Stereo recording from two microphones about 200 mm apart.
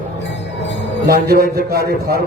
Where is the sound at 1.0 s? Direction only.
50° right (ahead or behind).